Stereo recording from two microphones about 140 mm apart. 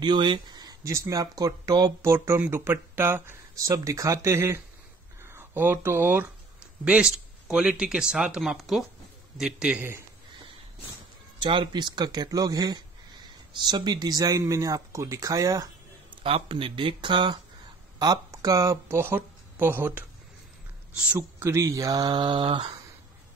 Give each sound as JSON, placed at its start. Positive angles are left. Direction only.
{"t": 0.0, "sound": "a man's voice", "side_deg": -35}
{"t": 11.4, "sound": "speech", "side_deg": -35}
{"t": 16.2, "sound": "a man's voice", "side_deg": -40}
{"t": 21.2, "sound": "speech", "side_deg": -20}